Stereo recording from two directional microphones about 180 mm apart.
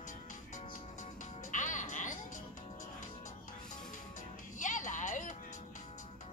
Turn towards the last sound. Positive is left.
turn(degrees=45)  # may be behind; listen again after turning